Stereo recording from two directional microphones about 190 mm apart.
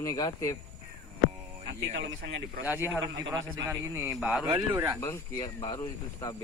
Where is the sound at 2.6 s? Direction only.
10° right (ahead or behind).